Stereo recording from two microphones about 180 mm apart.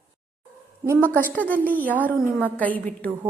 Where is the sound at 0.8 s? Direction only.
10° right (ahead or behind).